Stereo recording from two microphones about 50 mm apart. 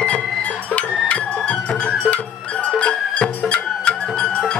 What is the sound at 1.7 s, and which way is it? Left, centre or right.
Music, centre.